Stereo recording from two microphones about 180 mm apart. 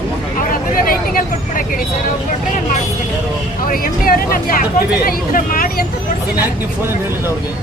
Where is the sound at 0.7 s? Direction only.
50° left (ahead or behind).